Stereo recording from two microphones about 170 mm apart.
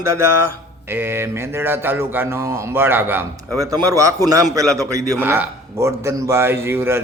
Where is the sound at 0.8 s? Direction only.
15° right (ahead or behind).